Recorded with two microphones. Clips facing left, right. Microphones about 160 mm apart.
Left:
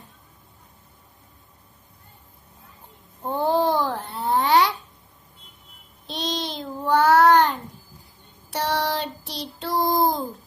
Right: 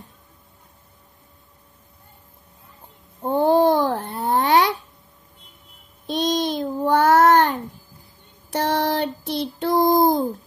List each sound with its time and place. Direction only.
3.3 s babbling: 55° right (ahead or behind)
6.0 s child singing: 50° right (ahead or behind)
8.5 s child singing: 55° right (ahead or behind)